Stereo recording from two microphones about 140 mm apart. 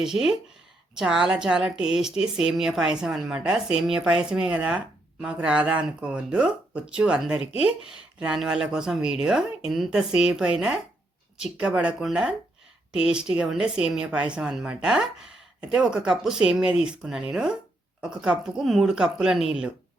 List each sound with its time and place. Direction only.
0.9 s speech: 5° right (ahead or behind)